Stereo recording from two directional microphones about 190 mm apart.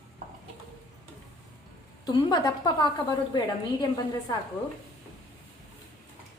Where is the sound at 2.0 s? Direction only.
20° left (ahead or behind).